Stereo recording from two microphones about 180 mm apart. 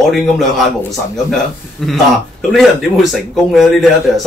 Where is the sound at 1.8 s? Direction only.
Centre (ahead or behind).